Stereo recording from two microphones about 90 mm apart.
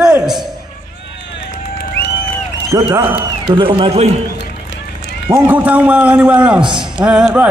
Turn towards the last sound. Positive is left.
turn(degrees=-15)  # may be behind; listen again after turning